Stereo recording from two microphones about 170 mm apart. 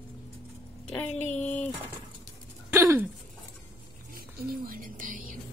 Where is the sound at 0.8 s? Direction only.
10° left (ahead or behind).